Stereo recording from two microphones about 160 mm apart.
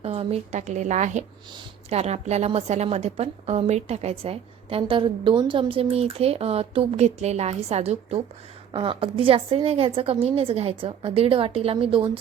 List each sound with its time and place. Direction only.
0.0 s a woman's voice: 40° right (ahead or behind)